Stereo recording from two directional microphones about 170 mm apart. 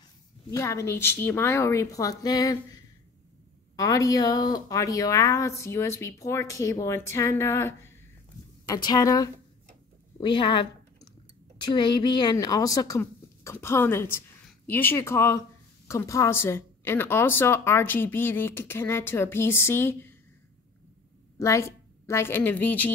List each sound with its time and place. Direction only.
0.5 s a woman's voice: 15° left (ahead or behind)
21.4 s a woman's voice: 15° left (ahead or behind)